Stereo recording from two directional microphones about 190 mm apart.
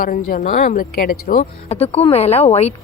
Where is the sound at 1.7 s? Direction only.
35° left (ahead or behind).